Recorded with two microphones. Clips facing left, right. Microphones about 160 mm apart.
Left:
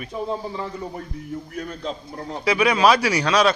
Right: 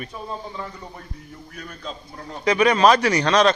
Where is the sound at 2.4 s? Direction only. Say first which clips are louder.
Right 1 dB; 5° left (ahead or behind).